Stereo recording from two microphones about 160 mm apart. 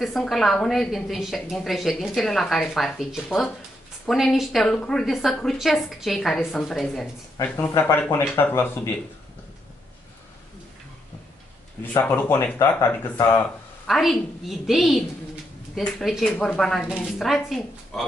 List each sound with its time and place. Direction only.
0.0 s a woman's voice: centre (ahead or behind)
12.2 s speech: 15° left (ahead or behind)
13.8 s a woman's voice: centre (ahead or behind)